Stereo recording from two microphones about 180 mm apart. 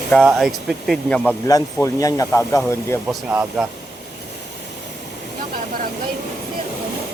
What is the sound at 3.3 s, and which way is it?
Speech, 10° right (ahead or behind).